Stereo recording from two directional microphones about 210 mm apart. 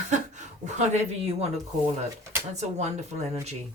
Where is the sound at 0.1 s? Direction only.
35° right (ahead or behind).